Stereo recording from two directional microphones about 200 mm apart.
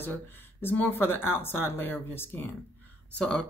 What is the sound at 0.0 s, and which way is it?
Speech, 10° left (ahead or behind).